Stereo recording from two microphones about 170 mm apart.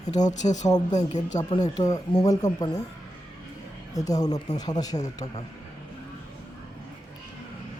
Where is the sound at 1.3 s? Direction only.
25° left (ahead or behind).